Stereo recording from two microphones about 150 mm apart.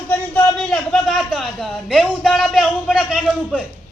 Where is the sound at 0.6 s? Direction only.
Centre (ahead or behind).